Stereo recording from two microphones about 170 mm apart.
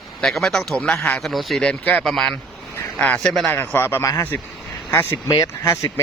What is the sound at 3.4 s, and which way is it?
Speech, 10° left (ahead or behind).